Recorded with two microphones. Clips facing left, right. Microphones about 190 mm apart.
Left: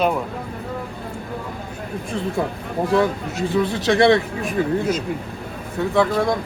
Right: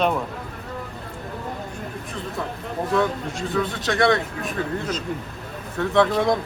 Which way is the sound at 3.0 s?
5° left (ahead or behind).